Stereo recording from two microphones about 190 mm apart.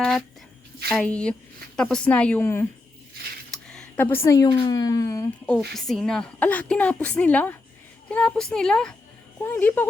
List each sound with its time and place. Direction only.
0.9 s a woman's voice: 5° left (ahead or behind)
5.7 s a woman's voice: centre (ahead or behind)